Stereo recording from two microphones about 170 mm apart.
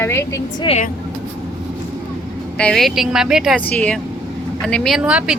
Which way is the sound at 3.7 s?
10° left (ahead or behind).